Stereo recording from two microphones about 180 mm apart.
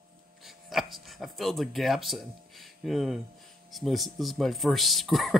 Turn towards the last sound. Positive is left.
turn(degrees=0)  # may be behind; listen again after turning